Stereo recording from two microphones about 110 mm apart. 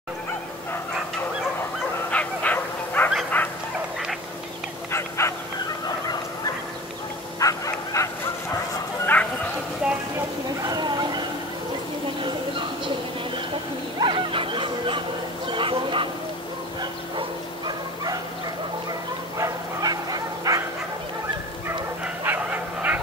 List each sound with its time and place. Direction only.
2.0 s bow-wow: 10° left (ahead or behind)
3.3 s dog: 15° left (ahead or behind)
4.9 s dog: 25° left (ahead or behind)
7.3 s bow-wow: 30° left (ahead or behind)
9.0 s bow-wow: 15° left (ahead or behind)
10.7 s a sound: 40° right (ahead or behind)
12.2 s a sound: 50° right (ahead or behind)
13.9 s dog: 50° right (ahead or behind)
15.5 s a sound: 50° right (ahead or behind)
17.6 s bow-wow: 35° right (ahead or behind)
19.3 s bow-wow: 35° right (ahead or behind)
22.0 s dog: 15° right (ahead or behind)